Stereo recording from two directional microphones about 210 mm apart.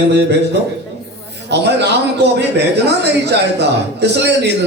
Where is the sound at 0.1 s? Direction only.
55° right (ahead or behind).